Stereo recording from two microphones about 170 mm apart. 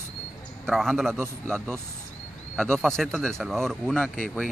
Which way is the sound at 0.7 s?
Centre (ahead or behind).